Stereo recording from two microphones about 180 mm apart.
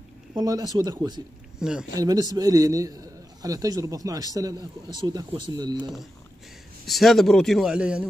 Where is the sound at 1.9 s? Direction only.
20° right (ahead or behind).